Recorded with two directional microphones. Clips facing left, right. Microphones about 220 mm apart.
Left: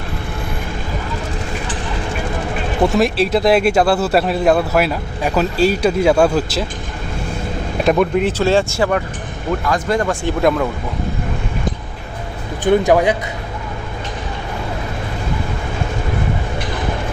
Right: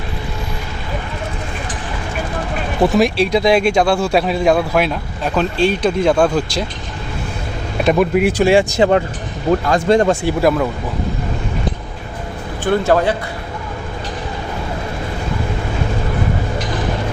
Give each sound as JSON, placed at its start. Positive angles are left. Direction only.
{"t": 2.8, "sound": "speech", "side_deg": 0}
{"t": 7.9, "sound": "speech", "side_deg": -5}
{"t": 10.2, "sound": "speech", "side_deg": -5}
{"t": 12.6, "sound": "speech", "side_deg": 15}